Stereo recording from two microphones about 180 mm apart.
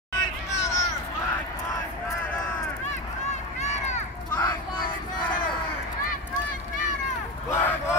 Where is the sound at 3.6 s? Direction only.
40° left (ahead or behind).